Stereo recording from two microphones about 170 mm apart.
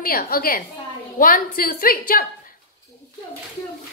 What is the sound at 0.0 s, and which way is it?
A woman's voice, 60° left (ahead or behind).